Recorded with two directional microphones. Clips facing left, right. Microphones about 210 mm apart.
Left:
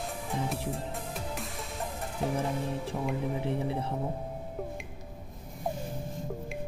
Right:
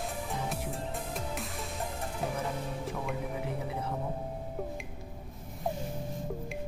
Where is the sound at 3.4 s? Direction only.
25° left (ahead or behind).